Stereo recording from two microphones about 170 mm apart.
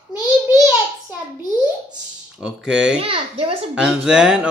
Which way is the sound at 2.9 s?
35° right (ahead or behind).